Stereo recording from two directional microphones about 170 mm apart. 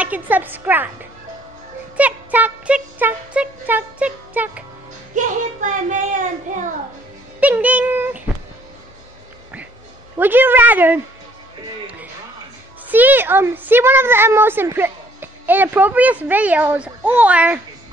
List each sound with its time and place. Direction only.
0.3 s speech: 10° right (ahead or behind)
2.0 s music: 10° right (ahead or behind)
5.1 s a sound: 50° right (ahead or behind)
7.3 s a sound: 10° right (ahead or behind)
10.1 s speech: 10° right (ahead or behind)
12.8 s a woman's voice: 10° right (ahead or behind)